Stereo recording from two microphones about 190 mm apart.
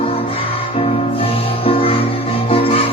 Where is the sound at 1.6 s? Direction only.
30° left (ahead or behind).